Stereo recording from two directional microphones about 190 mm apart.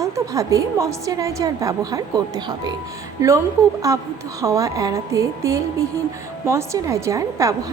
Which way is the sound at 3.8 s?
15° right (ahead or behind).